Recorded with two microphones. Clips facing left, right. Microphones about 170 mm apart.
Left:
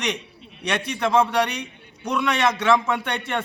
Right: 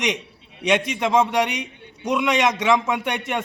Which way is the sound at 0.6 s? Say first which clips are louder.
Right 4 dB; 20° right (ahead or behind).